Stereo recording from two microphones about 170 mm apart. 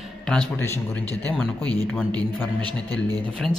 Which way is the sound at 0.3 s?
5° left (ahead or behind).